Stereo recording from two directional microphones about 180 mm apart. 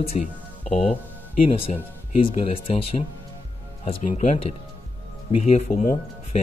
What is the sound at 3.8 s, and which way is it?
Speech, 45° left (ahead or behind).